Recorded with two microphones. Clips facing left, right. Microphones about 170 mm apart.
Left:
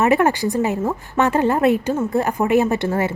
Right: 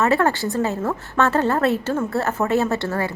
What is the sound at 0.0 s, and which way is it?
A woman's voice, 15° left (ahead or behind).